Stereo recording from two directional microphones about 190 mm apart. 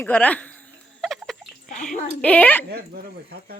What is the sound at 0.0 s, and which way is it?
Speech, 10° left (ahead or behind).